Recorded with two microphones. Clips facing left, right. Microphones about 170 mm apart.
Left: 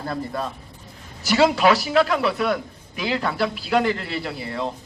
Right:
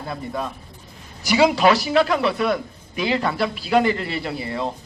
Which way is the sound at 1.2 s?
10° right (ahead or behind).